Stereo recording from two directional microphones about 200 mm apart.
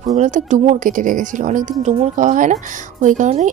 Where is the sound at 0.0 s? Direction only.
35° right (ahead or behind).